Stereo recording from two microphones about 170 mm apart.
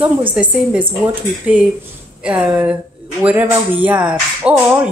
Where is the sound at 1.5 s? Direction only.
10° right (ahead or behind).